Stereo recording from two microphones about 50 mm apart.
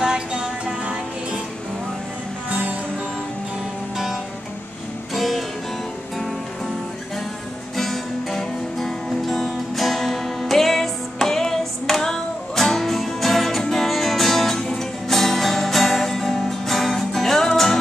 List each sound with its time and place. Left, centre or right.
0.0 s music: centre
5.1 s music: centre
7.7 s music: centre